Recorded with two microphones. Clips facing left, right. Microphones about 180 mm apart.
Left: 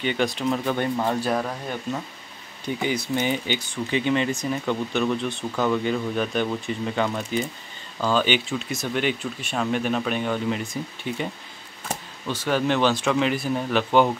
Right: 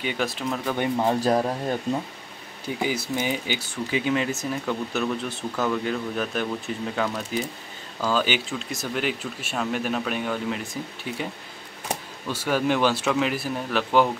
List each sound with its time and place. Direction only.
0.0 s speech: 5° right (ahead or behind)
0.7 s speech: 15° right (ahead or behind)
1.2 s speech: 30° right (ahead or behind)
2.6 s speech: 5° right (ahead or behind)